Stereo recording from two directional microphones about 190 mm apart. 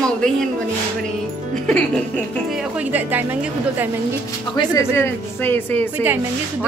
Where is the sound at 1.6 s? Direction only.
5° left (ahead or behind).